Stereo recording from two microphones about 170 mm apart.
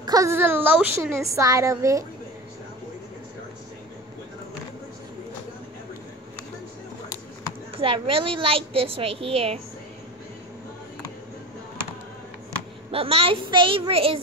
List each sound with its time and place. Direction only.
0.0 s a woman's voice: 20° right (ahead or behind)
7.7 s a woman's voice: 30° right (ahead or behind)
12.9 s a woman's voice: 35° right (ahead or behind)